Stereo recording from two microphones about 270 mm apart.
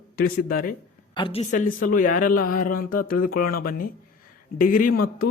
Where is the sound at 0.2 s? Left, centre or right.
Left.